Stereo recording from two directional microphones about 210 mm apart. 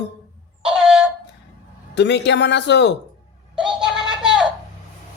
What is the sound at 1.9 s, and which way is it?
A man's voice, 55° left (ahead or behind).